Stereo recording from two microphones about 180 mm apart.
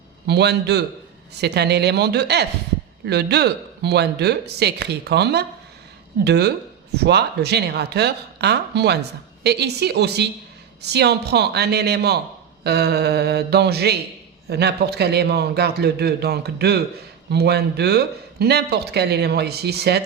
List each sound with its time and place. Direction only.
0.3 s speech: 65° right (ahead or behind)